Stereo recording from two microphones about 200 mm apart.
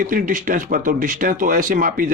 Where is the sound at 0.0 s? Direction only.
40° right (ahead or behind).